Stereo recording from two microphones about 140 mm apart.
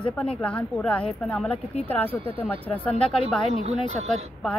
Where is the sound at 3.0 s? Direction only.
40° left (ahead or behind).